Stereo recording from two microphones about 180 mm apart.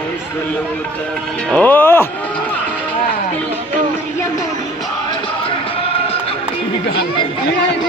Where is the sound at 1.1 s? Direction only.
5° left (ahead or behind).